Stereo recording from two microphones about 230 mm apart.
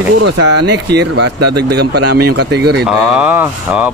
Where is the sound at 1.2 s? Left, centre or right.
Right.